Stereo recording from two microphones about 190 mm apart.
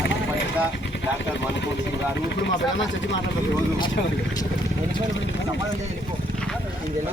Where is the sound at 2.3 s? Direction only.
70° left (ahead or behind).